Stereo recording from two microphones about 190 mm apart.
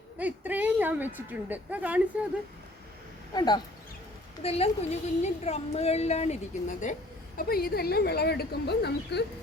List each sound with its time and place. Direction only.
0.2 s a woman's voice: 10° right (ahead or behind)
3.3 s speech: 20° left (ahead or behind)
4.4 s a woman's voice: 30° left (ahead or behind)
7.3 s speech: 50° left (ahead or behind)